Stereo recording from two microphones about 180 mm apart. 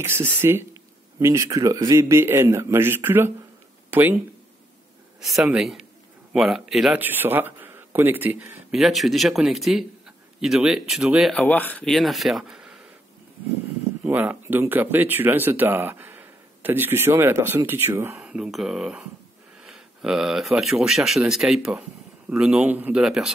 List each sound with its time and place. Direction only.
0.0 s speech: 10° right (ahead or behind)
5.2 s a man's voice: centre (ahead or behind)
11.4 s a man's voice: 10° left (ahead or behind)
14.0 s a man's voice: 10° right (ahead or behind)